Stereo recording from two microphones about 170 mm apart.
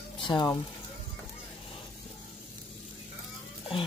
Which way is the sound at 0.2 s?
30° left (ahead or behind).